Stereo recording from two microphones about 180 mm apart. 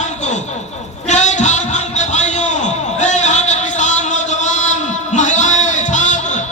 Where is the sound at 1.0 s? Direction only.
40° left (ahead or behind).